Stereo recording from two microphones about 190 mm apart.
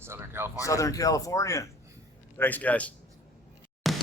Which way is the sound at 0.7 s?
15° left (ahead or behind).